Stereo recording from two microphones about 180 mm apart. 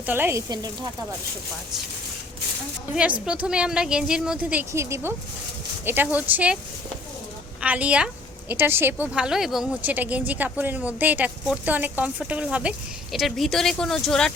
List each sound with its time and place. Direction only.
0.0 s a woman's voice: 10° right (ahead or behind)
2.9 s a woman's voice: 5° right (ahead or behind)
7.6 s a woman's voice: 10° right (ahead or behind)